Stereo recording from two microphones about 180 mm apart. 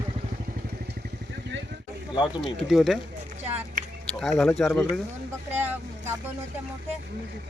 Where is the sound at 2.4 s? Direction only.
Centre (ahead or behind).